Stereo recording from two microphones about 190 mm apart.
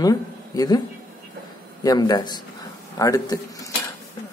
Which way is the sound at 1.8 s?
20° left (ahead or behind).